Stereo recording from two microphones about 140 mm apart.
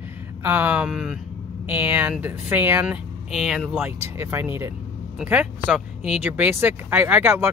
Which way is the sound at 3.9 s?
20° right (ahead or behind).